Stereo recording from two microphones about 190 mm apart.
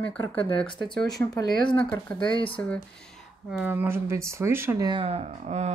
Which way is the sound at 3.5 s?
10° right (ahead or behind).